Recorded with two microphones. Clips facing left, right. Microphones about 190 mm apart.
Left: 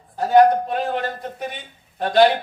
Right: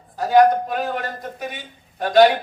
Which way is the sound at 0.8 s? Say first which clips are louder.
Left 2 dB; 30° left (ahead or behind).